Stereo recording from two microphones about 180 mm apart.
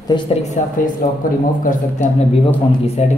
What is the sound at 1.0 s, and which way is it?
Speech, 45° left (ahead or behind).